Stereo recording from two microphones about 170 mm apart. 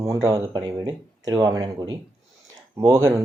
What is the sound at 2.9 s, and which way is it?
Speech, 20° right (ahead or behind).